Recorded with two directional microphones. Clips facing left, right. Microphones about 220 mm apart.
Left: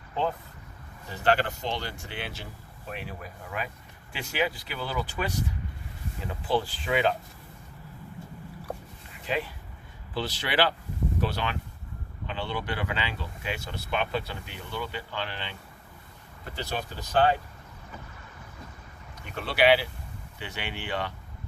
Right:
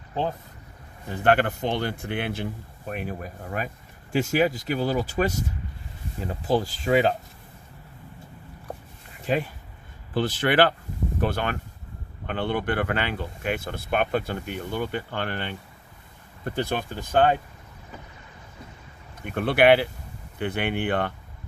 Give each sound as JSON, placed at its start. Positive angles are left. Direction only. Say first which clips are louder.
{"t": 1.1, "sound": "speech", "louder": "right 4 dB", "side_deg": -55}
{"t": 6.4, "sound": "speech", "louder": "right 4 dB", "side_deg": -45}
{"t": 9.3, "sound": "speech", "louder": "right 5 dB", "side_deg": -45}
{"t": 19.2, "sound": "speech", "louder": "right 5 dB", "side_deg": -55}